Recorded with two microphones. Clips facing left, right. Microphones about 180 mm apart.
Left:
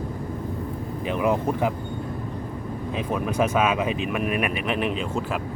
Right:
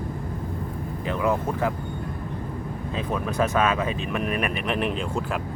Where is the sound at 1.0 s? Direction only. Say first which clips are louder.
Left 2 dB; 15° left (ahead or behind).